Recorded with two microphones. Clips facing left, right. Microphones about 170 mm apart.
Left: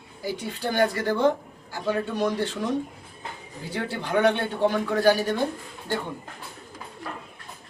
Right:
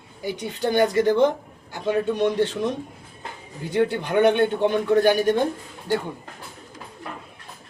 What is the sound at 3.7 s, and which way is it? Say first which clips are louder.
A man's voice: right 5 dB; 20° right (ahead or behind).